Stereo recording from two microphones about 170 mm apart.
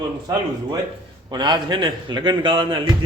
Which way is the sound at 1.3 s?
25° right (ahead or behind).